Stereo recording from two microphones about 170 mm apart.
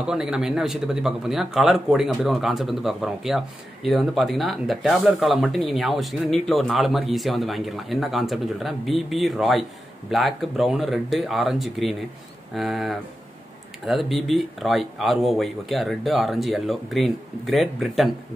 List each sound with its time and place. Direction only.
0.0 s a man's voice: 5° right (ahead or behind)